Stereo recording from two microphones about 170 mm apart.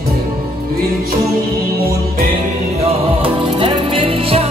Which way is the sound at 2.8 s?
30° right (ahead or behind).